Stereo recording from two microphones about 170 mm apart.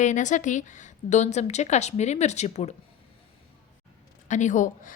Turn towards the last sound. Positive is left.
turn(degrees=50)  # may be behind; listen again after turning